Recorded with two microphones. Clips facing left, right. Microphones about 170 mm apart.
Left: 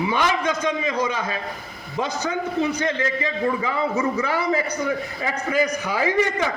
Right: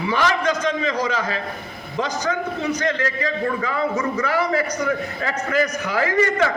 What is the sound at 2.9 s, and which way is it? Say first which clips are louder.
A man's voice: right 1 dB; 20° left (ahead or behind).